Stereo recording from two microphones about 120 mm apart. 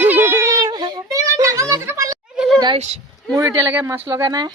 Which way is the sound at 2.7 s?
65° right (ahead or behind).